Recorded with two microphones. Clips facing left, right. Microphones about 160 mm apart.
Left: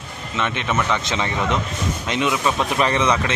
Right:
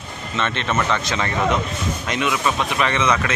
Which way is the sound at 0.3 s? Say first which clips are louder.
Even; 10° left (ahead or behind).